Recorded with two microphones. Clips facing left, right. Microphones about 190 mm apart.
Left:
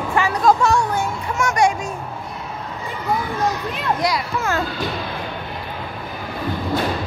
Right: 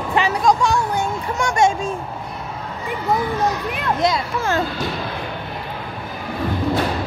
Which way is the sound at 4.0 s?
25° right (ahead or behind).